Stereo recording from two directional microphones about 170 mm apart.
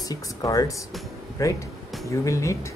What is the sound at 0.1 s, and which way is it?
Speech, 20° left (ahead or behind).